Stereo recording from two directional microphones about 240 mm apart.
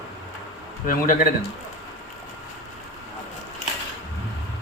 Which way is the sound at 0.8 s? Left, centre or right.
Left.